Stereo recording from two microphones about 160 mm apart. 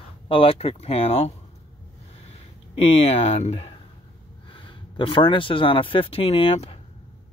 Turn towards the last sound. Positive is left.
turn(degrees=40)  # may be behind; listen again after turning